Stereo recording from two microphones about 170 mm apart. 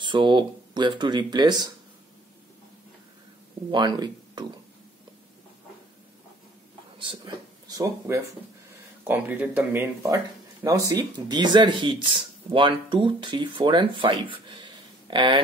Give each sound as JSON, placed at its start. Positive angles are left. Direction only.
{"t": 0.0, "sound": "speech", "side_deg": -30}
{"t": 3.7, "sound": "speech", "side_deg": -25}
{"t": 7.0, "sound": "speech", "side_deg": -25}